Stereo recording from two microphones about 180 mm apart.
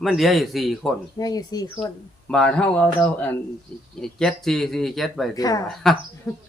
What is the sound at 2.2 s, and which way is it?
Speech, 5° left (ahead or behind).